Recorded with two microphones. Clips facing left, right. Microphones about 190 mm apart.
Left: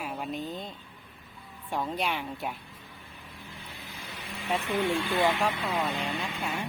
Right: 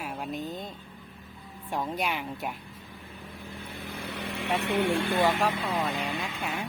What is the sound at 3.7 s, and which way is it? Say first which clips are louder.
Vehicle: right 10 dB; 60° right (ahead or behind).